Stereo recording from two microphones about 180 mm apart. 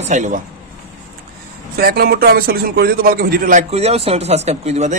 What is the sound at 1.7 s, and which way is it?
A man's voice, 55° right (ahead or behind).